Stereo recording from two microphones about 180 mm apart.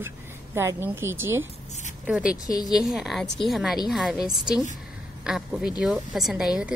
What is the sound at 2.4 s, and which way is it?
Speech, 20° left (ahead or behind).